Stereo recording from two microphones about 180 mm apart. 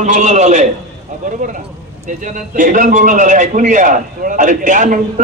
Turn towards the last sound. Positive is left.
turn(degrees=-45)  # may be behind; listen again after turning